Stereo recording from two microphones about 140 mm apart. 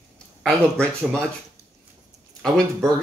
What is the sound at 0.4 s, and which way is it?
Speech, 5° left (ahead or behind).